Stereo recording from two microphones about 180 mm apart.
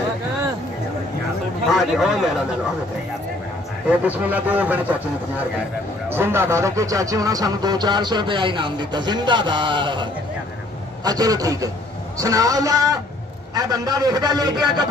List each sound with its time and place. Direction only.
1.7 s a man's voice: centre (ahead or behind)
4.0 s speech: 10° right (ahead or behind)
6.0 s speech: 15° right (ahead or behind)
11.1 s speech: 20° right (ahead or behind)